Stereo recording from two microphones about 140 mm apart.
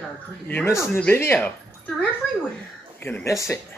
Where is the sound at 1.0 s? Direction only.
15° left (ahead or behind).